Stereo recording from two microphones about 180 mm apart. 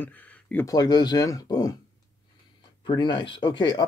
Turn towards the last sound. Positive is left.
turn(degrees=25)  # may be behind; listen again after turning